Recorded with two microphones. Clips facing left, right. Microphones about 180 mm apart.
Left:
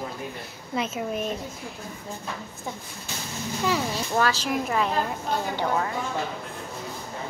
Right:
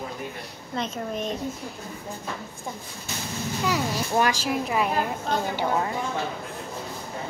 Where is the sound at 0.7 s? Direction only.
5° left (ahead or behind).